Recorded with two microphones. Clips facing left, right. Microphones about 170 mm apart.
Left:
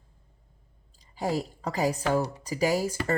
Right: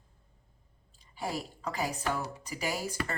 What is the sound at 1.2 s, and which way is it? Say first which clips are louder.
Speech: left 7 dB; 40° left (ahead or behind).